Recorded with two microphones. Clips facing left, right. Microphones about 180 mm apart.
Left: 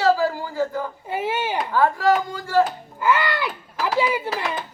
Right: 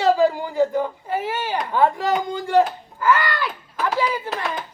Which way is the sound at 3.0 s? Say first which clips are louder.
Right 1 dB; 15° left (ahead or behind).